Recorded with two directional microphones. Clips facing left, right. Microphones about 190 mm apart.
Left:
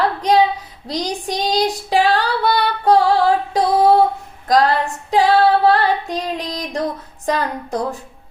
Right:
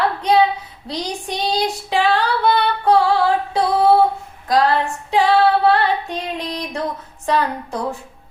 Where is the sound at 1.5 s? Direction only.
40° left (ahead or behind).